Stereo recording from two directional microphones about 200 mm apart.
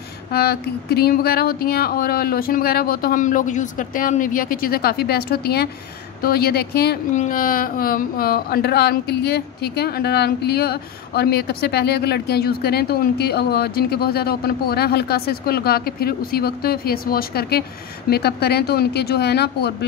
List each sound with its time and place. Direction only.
0.3 s speech: 50° left (ahead or behind)
7.2 s speech: 45° left (ahead or behind)